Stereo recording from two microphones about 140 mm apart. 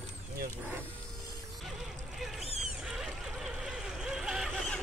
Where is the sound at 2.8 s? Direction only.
5° right (ahead or behind).